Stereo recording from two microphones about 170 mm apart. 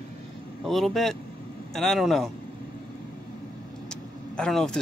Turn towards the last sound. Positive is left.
turn(degrees=5)  # may be behind; listen again after turning